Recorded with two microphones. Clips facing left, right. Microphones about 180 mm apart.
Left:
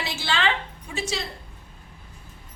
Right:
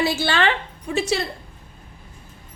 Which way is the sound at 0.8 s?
65° right (ahead or behind).